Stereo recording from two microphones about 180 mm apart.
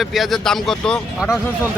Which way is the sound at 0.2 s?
5° left (ahead or behind).